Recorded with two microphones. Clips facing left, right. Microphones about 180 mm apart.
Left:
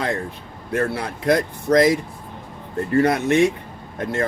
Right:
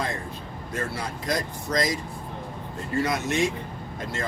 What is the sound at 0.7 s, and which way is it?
Speech, 60° left (ahead or behind).